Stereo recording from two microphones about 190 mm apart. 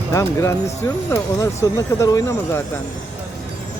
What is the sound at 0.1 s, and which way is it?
Speech, 15° left (ahead or behind).